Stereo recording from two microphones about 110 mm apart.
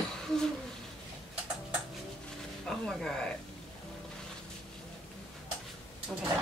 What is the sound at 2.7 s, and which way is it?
Speech, 5° left (ahead or behind).